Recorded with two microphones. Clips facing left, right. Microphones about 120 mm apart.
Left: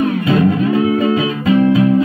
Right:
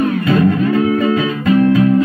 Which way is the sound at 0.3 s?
20° left (ahead or behind).